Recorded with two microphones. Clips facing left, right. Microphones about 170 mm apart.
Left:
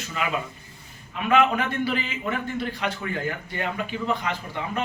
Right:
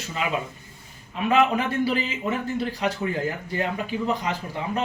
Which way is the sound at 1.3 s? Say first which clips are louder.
Even; 35° right (ahead or behind).